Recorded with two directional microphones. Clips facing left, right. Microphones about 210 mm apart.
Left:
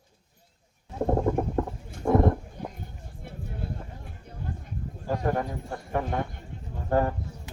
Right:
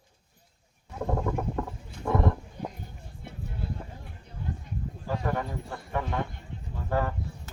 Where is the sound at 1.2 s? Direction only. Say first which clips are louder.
Left 5 dB; 35° left (ahead or behind).